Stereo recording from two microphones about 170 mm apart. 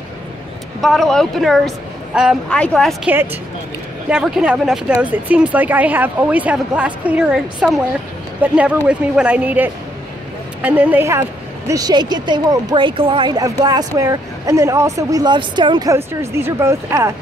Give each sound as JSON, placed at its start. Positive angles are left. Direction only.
{"t": 0.7, "sound": "speech", "side_deg": 0}
{"t": 2.5, "sound": "speech", "side_deg": 5}
{"t": 4.1, "sound": "a woman's voice", "side_deg": -5}
{"t": 16.1, "sound": "speech", "side_deg": -15}